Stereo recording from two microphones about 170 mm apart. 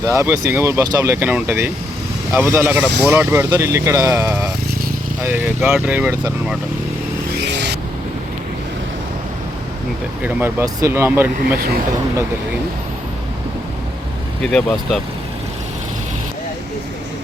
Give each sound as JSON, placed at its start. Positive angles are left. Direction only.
{"t": 0.0, "sound": "speech", "side_deg": -15}
{"t": 7.3, "sound": "vehicle", "side_deg": -90}
{"t": 10.2, "sound": "speech", "side_deg": -15}
{"t": 11.3, "sound": "speech", "side_deg": -65}
{"t": 14.4, "sound": "speech", "side_deg": 0}